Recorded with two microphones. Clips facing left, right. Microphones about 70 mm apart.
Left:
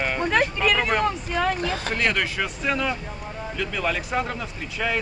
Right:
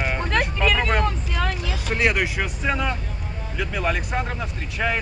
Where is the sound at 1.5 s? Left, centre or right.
Left.